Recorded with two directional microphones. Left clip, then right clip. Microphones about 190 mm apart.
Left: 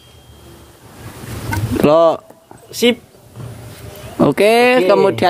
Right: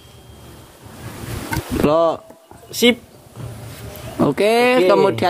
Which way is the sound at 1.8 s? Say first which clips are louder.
Left 5 dB; 35° left (ahead or behind).